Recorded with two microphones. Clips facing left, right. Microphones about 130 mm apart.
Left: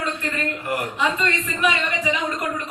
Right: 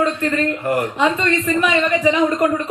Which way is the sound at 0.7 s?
40° right (ahead or behind).